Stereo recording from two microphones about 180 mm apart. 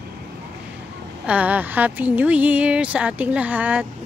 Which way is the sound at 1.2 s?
10° right (ahead or behind).